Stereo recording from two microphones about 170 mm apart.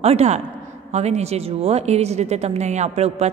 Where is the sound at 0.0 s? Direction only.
40° right (ahead or behind).